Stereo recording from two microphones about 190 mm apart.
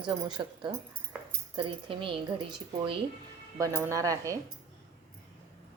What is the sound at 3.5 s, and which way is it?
Speech, 15° right (ahead or behind).